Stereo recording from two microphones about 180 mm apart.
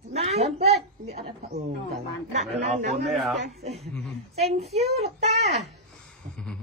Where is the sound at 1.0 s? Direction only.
35° right (ahead or behind).